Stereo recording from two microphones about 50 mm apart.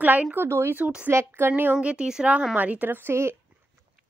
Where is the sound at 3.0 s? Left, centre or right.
Right.